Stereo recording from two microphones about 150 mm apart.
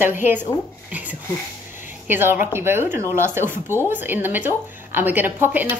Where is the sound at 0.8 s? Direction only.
10° right (ahead or behind).